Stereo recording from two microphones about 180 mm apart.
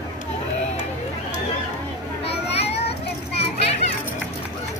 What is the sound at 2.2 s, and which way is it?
Children playing, 35° left (ahead or behind).